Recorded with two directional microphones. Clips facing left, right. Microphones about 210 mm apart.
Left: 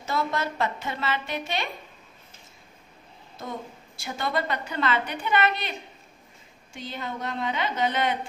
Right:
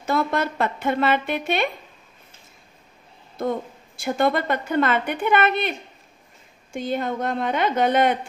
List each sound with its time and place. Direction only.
0.0 s a woman's voice: 55° right (ahead or behind)
3.3 s a woman's voice: 55° right (ahead or behind)